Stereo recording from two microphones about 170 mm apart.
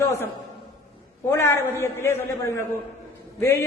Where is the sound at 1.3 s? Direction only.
15° left (ahead or behind).